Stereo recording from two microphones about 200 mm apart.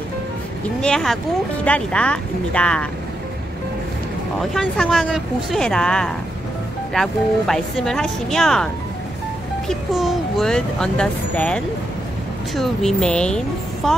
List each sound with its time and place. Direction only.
0.7 s speech: 5° left (ahead or behind)
4.6 s speech: centre (ahead or behind)
9.7 s a child's voice: centre (ahead or behind)